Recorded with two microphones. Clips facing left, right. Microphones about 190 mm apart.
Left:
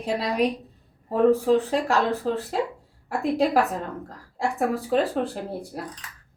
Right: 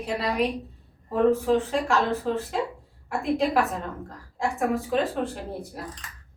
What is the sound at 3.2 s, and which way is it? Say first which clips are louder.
Speech: left 2 dB; 35° left (ahead or behind).